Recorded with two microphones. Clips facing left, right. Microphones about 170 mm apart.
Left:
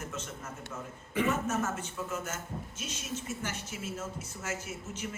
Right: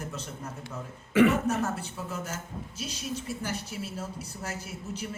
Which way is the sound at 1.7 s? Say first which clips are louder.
Right 1 dB; 35° right (ahead or behind).